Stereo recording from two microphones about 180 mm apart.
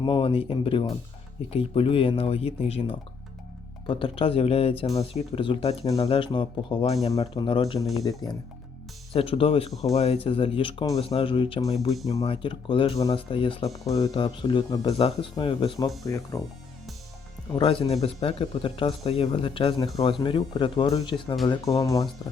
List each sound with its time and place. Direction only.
0.0 s speech: 30° left (ahead or behind)
11.9 s speech: centre (ahead or behind)
12.2 s speech: 30° left (ahead or behind)
16.0 s speech: 20° left (ahead or behind)
17.5 s speech: 30° left (ahead or behind)